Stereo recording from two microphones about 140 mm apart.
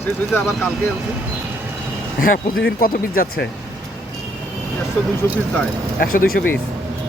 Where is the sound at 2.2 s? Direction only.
90° left.